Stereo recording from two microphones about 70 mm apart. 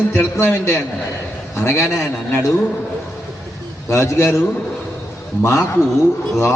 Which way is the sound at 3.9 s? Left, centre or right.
Left.